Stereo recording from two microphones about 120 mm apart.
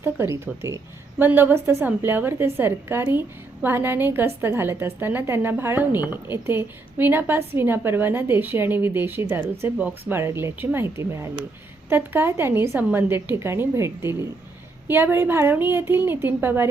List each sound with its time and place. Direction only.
0.0 s a woman's voice: 20° right (ahead or behind)